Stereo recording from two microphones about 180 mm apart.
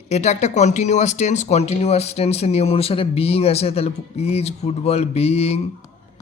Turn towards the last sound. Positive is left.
turn(degrees=35)  # may be behind; listen again after turning